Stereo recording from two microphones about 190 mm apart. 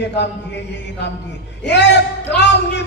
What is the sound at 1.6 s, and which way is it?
Speech, 65° left (ahead or behind).